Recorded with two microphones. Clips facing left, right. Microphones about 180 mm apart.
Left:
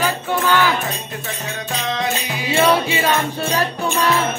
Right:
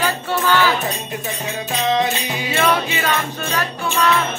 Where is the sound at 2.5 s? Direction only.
25° left (ahead or behind).